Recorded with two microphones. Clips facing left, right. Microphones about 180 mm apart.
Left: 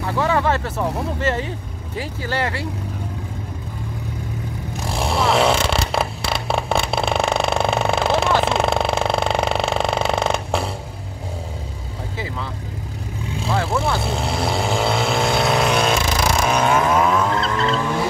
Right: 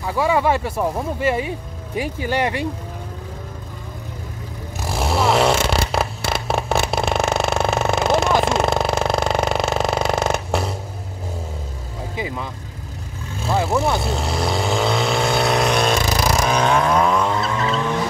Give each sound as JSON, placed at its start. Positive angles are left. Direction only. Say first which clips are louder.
{"t": 0.0, "sound": "speech", "louder": "right 1 dB", "side_deg": -10}
{"t": 4.9, "sound": "zipper", "louder": "right 1 dB", "side_deg": -5}
{"t": 8.5, "sound": "mechanisms", "louder": "even", "side_deg": 0}
{"t": 13.5, "sound": "vehicle", "louder": "right 2 dB", "side_deg": -20}
{"t": 14.0, "sound": "vehicle", "louder": "even", "side_deg": 0}